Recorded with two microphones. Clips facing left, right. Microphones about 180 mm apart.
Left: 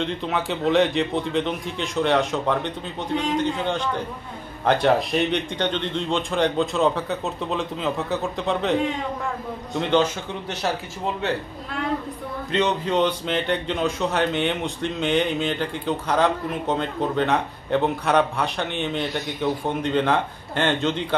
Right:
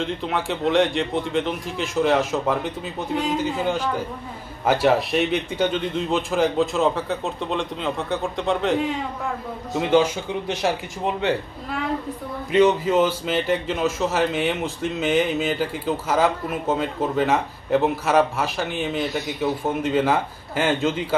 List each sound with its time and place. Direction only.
0.0 s a man's voice: centre (ahead or behind)
12.4 s a man's voice: 10° right (ahead or behind)